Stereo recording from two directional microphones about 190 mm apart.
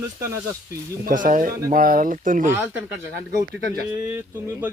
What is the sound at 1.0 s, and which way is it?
Speech, 45° right (ahead or behind).